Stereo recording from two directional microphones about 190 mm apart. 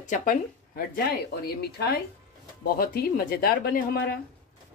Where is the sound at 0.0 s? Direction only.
40° left (ahead or behind).